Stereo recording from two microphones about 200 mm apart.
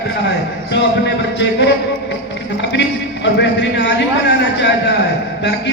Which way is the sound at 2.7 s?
60° left (ahead or behind).